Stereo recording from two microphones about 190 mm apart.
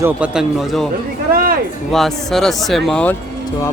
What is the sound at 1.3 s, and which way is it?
Speech, 50° right (ahead or behind).